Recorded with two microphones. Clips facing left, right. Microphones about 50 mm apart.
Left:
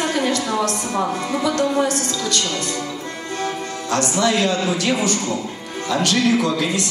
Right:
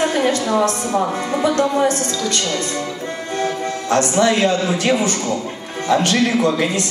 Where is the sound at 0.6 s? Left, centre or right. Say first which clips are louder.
Right 3 dB; right.